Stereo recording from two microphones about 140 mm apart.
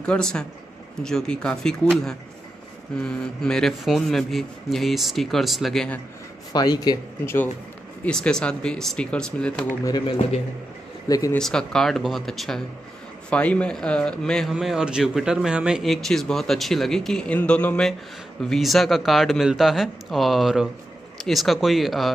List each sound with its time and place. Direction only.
0.0 s speech: 5° left (ahead or behind)
6.5 s speech: 30° left (ahead or behind)
8.0 s speech: 5° left (ahead or behind)
9.8 s speech: 30° left (ahead or behind)
11.3 s speech: 5° left (ahead or behind)